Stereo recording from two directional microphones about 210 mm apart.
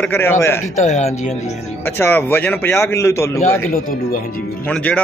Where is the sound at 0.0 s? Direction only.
10° left (ahead or behind).